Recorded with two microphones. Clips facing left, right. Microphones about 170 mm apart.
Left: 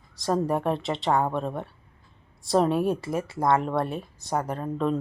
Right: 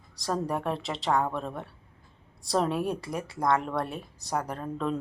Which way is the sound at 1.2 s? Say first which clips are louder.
Left 4 dB; 30° left (ahead or behind).